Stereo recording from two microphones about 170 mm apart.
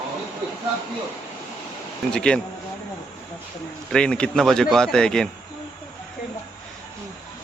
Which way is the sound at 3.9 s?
5° left (ahead or behind).